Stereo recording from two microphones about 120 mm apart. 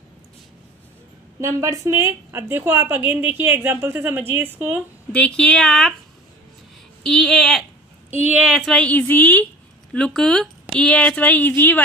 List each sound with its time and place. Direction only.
1.4 s a woman's voice: 25° right (ahead or behind)
5.1 s speech: 10° left (ahead or behind)
7.0 s speech: 5° left (ahead or behind)